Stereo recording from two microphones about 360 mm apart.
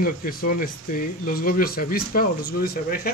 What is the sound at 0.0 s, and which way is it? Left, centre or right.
Speech, left.